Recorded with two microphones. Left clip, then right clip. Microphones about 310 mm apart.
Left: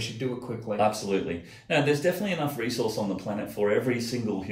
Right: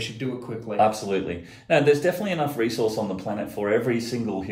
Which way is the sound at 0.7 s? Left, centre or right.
Centre.